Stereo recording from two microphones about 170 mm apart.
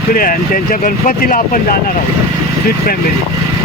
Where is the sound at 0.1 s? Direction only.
55° left (ahead or behind).